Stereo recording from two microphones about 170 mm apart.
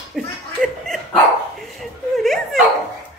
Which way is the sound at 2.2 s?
Centre (ahead or behind).